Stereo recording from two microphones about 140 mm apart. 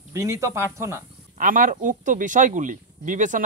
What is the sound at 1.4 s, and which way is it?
Speech, 75° right (ahead or behind).